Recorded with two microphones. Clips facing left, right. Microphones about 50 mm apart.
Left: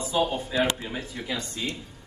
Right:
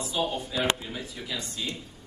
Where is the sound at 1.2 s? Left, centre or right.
Left.